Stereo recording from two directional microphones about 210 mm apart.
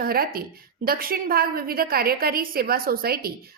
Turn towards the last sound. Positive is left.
turn(degrees=-45)  # may be behind; listen again after turning